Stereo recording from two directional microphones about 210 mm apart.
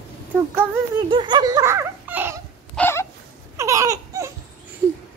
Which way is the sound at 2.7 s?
10° left (ahead or behind).